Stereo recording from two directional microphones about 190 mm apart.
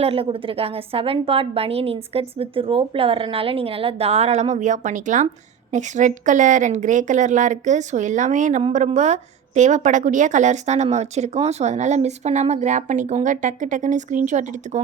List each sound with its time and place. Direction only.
0.0 s speech: 30° right (ahead or behind)